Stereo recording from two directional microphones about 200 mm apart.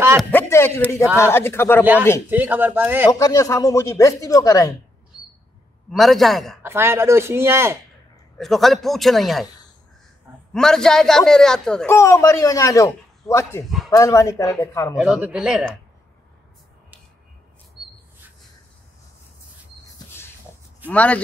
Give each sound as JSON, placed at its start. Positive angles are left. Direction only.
{"t": 0.2, "sound": "a man's voice", "side_deg": 10}
{"t": 2.2, "sound": "speech", "side_deg": -10}
{"t": 3.1, "sound": "a man's voice", "side_deg": 15}
{"t": 5.9, "sound": "speech", "side_deg": 0}
{"t": 6.6, "sound": "speech", "side_deg": -10}
{"t": 8.4, "sound": "speech", "side_deg": 0}
{"t": 10.5, "sound": "a man's voice", "side_deg": 0}
{"t": 15.0, "sound": "speech", "side_deg": -5}
{"t": 20.9, "sound": "a man's voice", "side_deg": 5}